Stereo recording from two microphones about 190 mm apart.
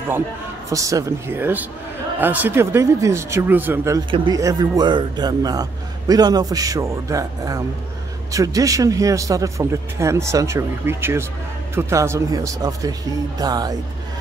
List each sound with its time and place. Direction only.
0.7 s a man's voice: 15° right (ahead or behind)